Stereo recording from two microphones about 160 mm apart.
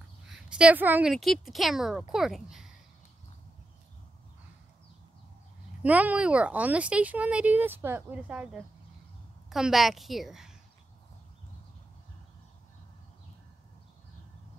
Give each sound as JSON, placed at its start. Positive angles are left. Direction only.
{"t": 0.3, "sound": "a woman's voice", "side_deg": -5}
{"t": 1.1, "sound": "a woman's voice", "side_deg": 0}
{"t": 5.8, "sound": "a woman's voice", "side_deg": -10}